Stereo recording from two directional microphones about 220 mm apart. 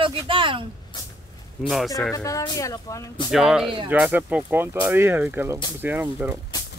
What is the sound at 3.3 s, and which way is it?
Speech, centre (ahead or behind).